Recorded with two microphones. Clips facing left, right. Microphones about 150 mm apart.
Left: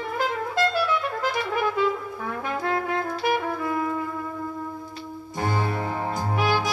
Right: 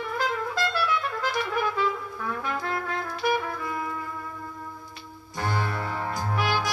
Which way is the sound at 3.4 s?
25° left (ahead or behind).